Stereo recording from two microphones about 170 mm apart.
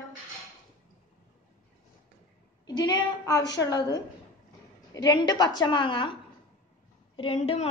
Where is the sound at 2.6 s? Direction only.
25° left (ahead or behind).